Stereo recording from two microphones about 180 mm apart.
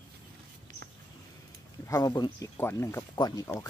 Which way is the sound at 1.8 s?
15° left (ahead or behind).